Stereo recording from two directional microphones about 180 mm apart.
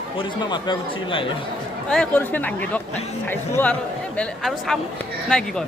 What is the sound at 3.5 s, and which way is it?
Speech, 10° left (ahead or behind).